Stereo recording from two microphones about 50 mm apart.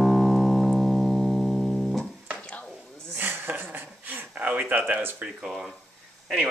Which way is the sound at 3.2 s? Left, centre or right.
Right.